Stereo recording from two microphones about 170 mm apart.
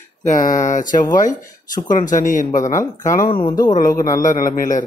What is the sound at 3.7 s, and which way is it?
A man's voice, 55° left (ahead or behind).